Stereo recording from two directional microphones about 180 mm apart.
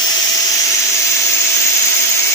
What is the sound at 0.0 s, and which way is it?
Vacuum cleaner, 20° left (ahead or behind).